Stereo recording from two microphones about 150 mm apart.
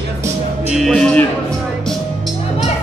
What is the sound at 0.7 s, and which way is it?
Speech, centre (ahead or behind).